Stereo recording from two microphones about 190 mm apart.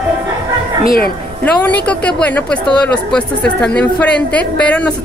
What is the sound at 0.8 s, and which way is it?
Speech, 55° left (ahead or behind).